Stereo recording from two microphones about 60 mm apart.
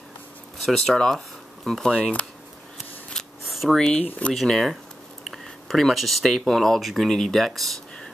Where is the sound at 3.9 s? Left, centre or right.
Left.